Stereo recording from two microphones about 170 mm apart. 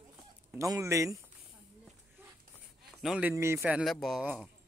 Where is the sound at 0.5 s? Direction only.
20° right (ahead or behind).